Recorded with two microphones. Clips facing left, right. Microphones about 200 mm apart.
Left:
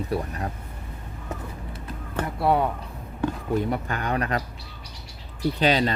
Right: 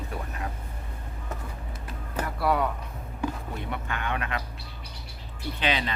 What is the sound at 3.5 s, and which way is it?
Speech, 40° left (ahead or behind).